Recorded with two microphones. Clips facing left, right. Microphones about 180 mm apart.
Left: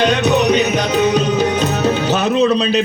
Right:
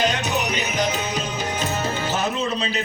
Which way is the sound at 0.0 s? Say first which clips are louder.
Left 9 dB; 65° left (ahead or behind).